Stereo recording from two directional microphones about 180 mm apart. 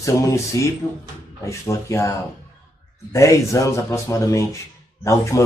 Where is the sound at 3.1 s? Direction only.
15° left (ahead or behind).